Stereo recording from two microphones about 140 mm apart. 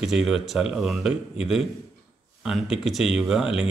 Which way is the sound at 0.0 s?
Centre (ahead or behind).